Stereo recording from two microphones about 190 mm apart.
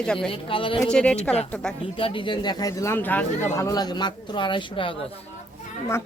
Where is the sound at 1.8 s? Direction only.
25° left (ahead or behind).